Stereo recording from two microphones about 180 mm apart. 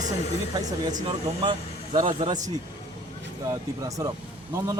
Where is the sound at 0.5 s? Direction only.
25° right (ahead or behind).